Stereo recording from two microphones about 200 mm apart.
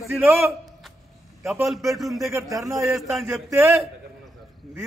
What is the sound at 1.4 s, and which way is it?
Speech, centre (ahead or behind).